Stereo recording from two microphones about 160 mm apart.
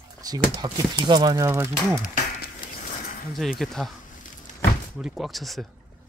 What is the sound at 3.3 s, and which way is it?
Speech, centre (ahead or behind).